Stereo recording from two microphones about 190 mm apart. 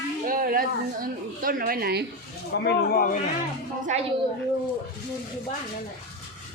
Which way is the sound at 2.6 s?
55° left (ahead or behind).